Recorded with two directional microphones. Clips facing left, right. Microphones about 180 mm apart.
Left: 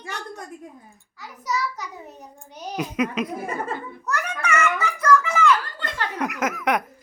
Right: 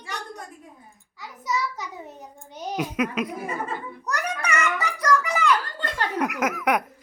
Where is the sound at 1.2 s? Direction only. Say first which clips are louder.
Left 1 dB; 20° right (ahead or behind).